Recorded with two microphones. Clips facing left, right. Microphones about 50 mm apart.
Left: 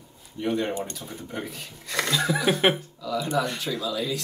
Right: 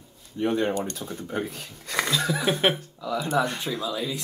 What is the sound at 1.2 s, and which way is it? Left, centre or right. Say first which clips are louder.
Speech: right 4 dB; right.